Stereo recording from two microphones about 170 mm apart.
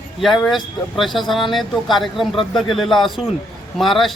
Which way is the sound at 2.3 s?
30° left (ahead or behind).